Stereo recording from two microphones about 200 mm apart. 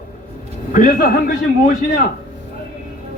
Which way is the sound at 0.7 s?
45° left (ahead or behind).